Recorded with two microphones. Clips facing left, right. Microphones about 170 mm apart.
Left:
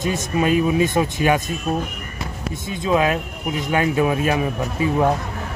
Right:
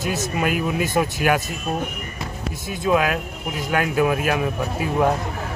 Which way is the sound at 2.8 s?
20° left (ahead or behind).